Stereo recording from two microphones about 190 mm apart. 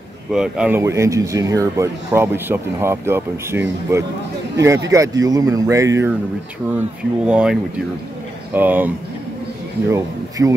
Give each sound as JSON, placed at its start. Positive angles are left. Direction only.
{"t": 0.3, "sound": "speech", "side_deg": -5}
{"t": 7.2, "sound": "speech", "side_deg": -5}
{"t": 8.5, "sound": "speech", "side_deg": -10}